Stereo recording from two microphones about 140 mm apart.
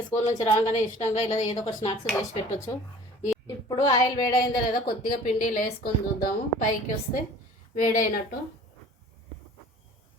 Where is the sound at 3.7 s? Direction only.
30° left (ahead or behind).